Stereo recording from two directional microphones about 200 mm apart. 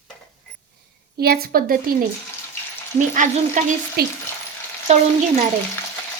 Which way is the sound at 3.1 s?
40° right (ahead or behind).